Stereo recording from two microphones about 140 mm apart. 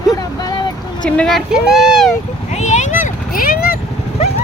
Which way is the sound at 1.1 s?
5° left (ahead or behind).